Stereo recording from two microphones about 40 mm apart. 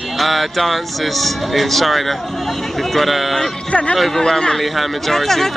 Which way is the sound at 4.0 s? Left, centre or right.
Centre.